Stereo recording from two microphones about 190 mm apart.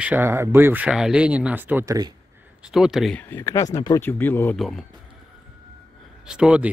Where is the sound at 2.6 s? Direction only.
5° right (ahead or behind).